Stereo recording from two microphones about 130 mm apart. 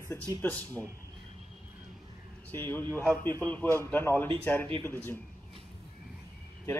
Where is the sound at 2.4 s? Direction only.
15° left (ahead or behind).